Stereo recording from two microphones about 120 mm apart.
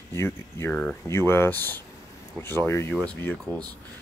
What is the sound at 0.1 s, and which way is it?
Speech, 20° left (ahead or behind).